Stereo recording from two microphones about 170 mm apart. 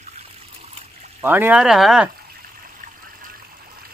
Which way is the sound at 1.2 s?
10° right (ahead or behind).